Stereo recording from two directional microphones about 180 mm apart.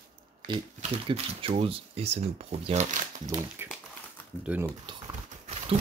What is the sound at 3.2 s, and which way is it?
Speech, 15° right (ahead or behind).